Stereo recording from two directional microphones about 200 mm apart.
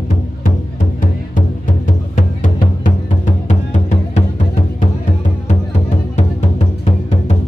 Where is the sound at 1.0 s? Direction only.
40° left (ahead or behind).